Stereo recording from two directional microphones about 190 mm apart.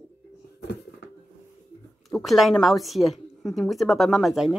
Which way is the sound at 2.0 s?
Centre (ahead or behind).